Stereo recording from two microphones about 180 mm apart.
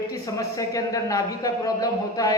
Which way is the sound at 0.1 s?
20° left (ahead or behind).